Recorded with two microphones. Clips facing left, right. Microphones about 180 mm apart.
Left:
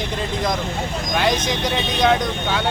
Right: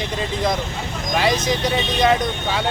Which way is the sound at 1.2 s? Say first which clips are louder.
Right 1 dB; centre (ahead or behind).